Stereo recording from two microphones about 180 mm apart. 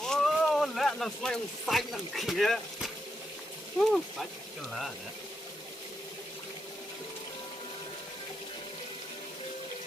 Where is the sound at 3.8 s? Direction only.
Centre (ahead or behind).